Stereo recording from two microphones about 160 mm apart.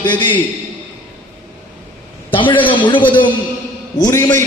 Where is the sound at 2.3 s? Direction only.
30° left (ahead or behind).